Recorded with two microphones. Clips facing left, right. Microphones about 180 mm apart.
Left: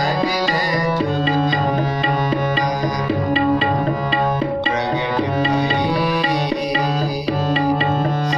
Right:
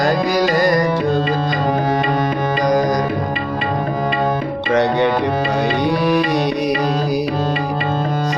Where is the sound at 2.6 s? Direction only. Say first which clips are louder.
Right 6 dB; 45° right (ahead or behind).